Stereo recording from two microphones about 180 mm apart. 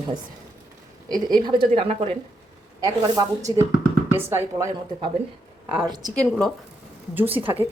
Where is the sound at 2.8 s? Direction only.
20° right (ahead or behind).